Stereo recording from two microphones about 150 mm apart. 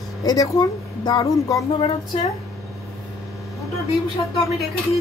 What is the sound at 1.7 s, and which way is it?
Speech, 40° left (ahead or behind).